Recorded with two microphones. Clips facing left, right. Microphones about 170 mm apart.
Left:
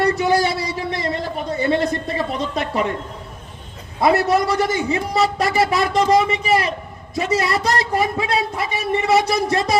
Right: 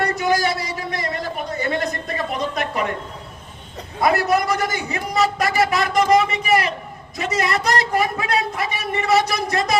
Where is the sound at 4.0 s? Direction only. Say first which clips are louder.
Left 2 dB; 25° left (ahead or behind).